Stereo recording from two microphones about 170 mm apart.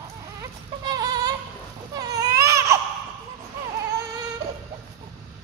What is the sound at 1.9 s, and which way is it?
Baby cry, 20° right (ahead or behind).